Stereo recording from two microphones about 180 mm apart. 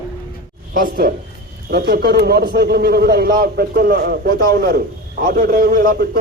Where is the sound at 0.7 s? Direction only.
60° right (ahead or behind).